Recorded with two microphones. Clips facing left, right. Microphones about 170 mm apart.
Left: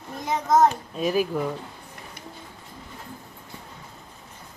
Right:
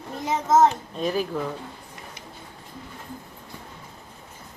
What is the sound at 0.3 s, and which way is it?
A child's voice, 5° right (ahead or behind).